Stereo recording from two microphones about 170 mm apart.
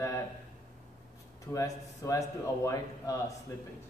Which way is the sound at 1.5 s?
20° left (ahead or behind).